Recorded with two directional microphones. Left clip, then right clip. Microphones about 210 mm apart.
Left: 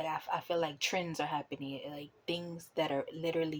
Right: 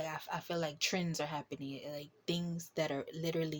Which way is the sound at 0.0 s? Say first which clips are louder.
Left 5 dB; 50° right (ahead or behind).